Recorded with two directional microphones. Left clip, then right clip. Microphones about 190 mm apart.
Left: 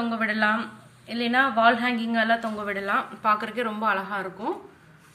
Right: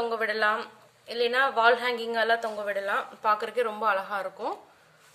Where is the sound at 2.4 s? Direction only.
60° right (ahead or behind); by 4.5 s 80° right.